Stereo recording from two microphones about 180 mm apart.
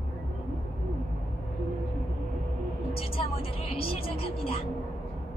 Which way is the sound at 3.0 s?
30° left (ahead or behind).